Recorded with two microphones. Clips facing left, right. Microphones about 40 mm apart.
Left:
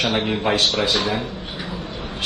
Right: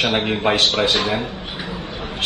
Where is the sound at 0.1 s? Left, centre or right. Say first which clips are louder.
Right 2 dB; right.